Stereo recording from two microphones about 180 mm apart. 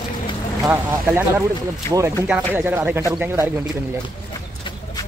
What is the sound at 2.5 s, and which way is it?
Speech, 10° right (ahead or behind).